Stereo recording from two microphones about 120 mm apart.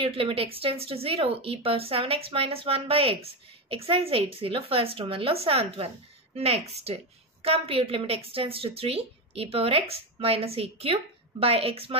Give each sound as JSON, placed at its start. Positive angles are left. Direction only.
{"t": 0.0, "sound": "a woman's voice", "side_deg": -55}